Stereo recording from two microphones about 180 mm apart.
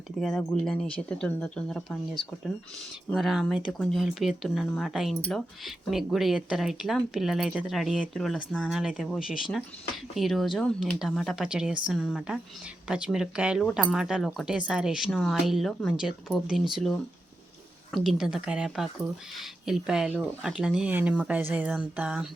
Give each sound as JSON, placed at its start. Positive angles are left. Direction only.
{"t": 0.2, "sound": "speech", "side_deg": 0}
{"t": 3.2, "sound": "speech", "side_deg": 0}